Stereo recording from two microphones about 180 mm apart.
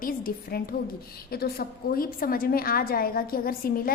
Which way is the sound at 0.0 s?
50° left (ahead or behind).